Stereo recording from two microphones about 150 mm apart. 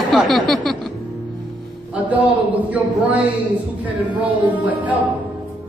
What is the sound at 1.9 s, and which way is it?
A man's voice, 10° right (ahead or behind).